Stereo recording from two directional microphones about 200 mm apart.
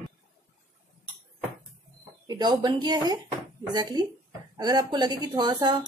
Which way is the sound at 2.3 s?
20° right (ahead or behind).